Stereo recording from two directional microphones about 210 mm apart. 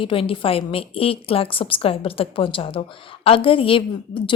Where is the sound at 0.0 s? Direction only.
25° left (ahead or behind).